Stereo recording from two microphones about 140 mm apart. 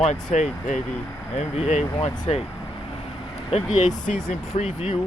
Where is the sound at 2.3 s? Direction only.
50° left (ahead or behind).